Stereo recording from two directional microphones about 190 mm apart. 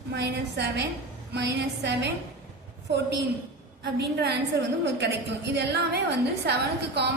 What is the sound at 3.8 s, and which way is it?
Speech, 60° right (ahead or behind).